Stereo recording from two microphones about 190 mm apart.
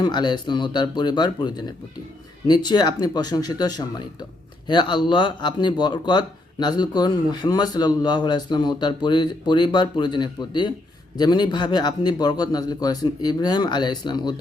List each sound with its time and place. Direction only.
0.0 s speech: 25° left (ahead or behind)